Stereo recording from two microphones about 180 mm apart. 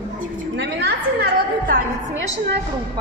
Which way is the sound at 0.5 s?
70° right (ahead or behind).